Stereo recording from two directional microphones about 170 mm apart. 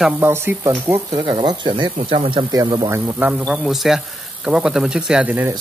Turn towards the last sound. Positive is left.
turn(degrees=-10)  # may be behind; listen again after turning